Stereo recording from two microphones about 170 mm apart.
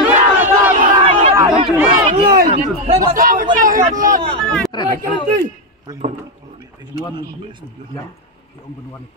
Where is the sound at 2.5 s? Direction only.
50° right (ahead or behind).